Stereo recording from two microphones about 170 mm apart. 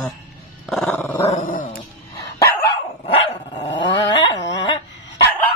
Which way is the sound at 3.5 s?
25° left (ahead or behind).